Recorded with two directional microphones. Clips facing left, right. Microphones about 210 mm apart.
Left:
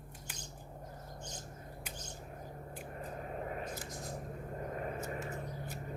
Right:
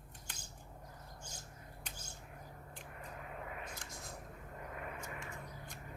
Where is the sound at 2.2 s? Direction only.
35° left (ahead or behind).